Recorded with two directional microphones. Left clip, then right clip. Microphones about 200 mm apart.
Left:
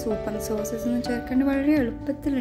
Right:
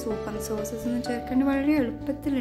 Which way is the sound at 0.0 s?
15° left (ahead or behind).